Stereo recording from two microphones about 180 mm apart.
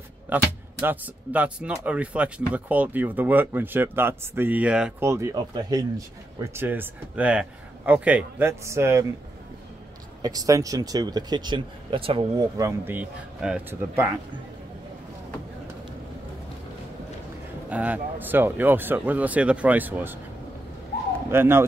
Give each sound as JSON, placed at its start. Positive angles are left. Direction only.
{"t": 0.3, "sound": "speech", "side_deg": -10}
{"t": 5.0, "sound": "speech", "side_deg": -15}
{"t": 10.2, "sound": "speech", "side_deg": -20}
{"t": 17.6, "sound": "speech", "side_deg": -10}
{"t": 21.3, "sound": "speech", "side_deg": -15}